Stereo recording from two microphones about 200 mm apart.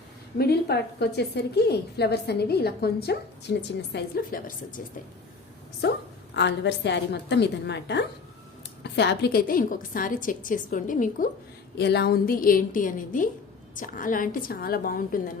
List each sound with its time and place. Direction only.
0.3 s a woman's voice: 55° left (ahead or behind)
6.3 s a woman's voice: 60° left (ahead or behind); by 11.3 s 40° left (ahead or behind)
11.8 s a woman's voice: 55° left (ahead or behind)